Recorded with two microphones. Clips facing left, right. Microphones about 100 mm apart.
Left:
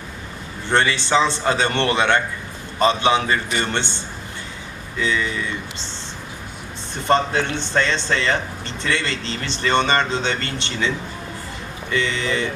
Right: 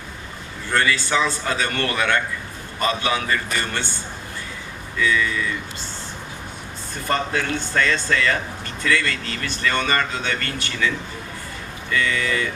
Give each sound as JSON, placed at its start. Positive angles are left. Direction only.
{"t": 0.7, "sound": "a man's voice", "side_deg": 25}
{"t": 4.9, "sound": "a man's voice", "side_deg": 25}
{"t": 7.1, "sound": "a man's voice", "side_deg": 25}